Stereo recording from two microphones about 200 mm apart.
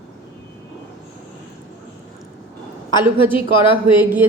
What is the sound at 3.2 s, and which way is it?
Speech, 25° left (ahead or behind).